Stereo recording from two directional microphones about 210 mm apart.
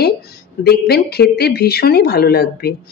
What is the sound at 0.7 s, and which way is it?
A woman's voice, 50° left (ahead or behind).